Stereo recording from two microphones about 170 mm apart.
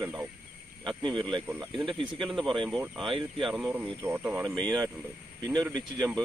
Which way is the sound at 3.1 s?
30° right (ahead or behind).